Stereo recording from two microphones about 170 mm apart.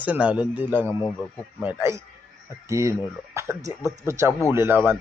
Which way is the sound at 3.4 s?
15° right (ahead or behind).